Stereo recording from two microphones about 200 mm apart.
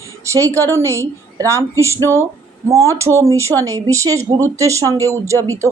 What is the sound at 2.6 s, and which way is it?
A woman's voice, 15° right (ahead or behind).